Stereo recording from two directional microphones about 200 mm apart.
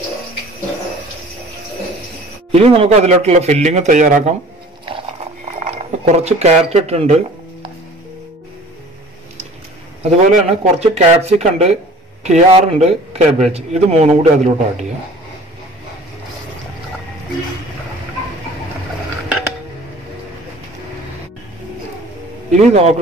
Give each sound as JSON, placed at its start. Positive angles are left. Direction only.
{"t": 2.5, "sound": "a man's voice", "side_deg": -30}
{"t": 5.6, "sound": "speech", "side_deg": -35}
{"t": 10.0, "sound": "a man's voice", "side_deg": -35}
{"t": 22.6, "sound": "a man's voice", "side_deg": -35}